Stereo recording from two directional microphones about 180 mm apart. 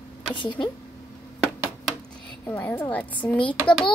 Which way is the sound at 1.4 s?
5° left (ahead or behind).